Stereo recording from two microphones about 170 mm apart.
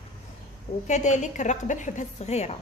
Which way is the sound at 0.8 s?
45° left (ahead or behind).